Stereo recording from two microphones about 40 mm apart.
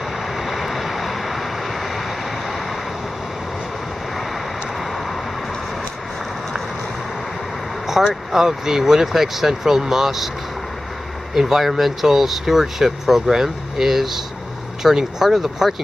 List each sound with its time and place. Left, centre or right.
0.3 s vehicle: centre
4.7 s vehicle: centre
8.0 s speech: centre
11.3 s speech: centre